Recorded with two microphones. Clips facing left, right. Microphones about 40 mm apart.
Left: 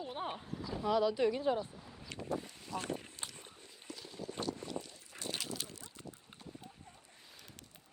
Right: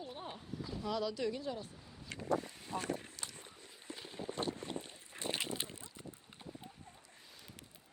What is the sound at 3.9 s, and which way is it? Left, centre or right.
Boat, right.